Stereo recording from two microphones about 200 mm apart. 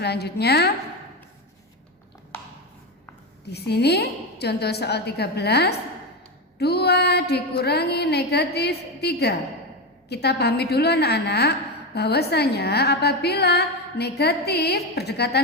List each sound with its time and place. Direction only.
0.0 s a woman's voice: 55° left (ahead or behind)
3.5 s a woman's voice: 55° left (ahead or behind)